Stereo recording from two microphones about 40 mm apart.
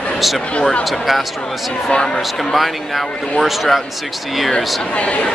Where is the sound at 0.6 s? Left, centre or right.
Left.